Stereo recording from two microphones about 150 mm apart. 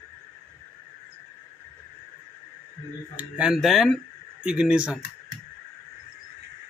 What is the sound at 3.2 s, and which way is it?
Speech, 5° right (ahead or behind).